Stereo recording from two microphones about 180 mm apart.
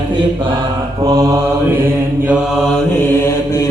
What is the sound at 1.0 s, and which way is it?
Mantra, 20° right (ahead or behind).